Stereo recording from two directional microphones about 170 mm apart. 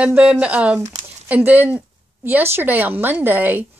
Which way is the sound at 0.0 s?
5° right (ahead or behind).